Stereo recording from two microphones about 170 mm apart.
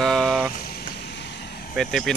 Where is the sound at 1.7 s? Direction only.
Centre (ahead or behind).